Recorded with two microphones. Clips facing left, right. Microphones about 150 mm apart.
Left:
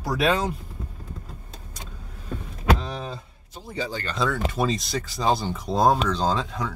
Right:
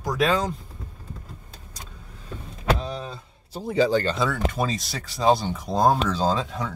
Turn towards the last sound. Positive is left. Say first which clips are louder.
# right 1 dB
turn(degrees=0)  # may be behind; listen again after turning